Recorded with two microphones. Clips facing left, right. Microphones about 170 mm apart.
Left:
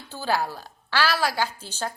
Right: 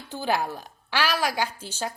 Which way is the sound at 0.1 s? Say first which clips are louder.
Even; 20° right (ahead or behind).